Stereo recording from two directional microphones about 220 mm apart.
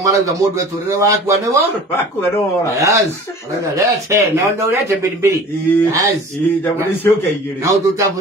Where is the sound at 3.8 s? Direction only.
15° right (ahead or behind).